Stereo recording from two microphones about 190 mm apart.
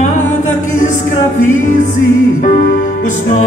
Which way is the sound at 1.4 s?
40° left (ahead or behind).